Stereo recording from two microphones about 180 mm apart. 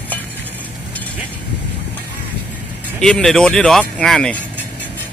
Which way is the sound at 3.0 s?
Centre (ahead or behind).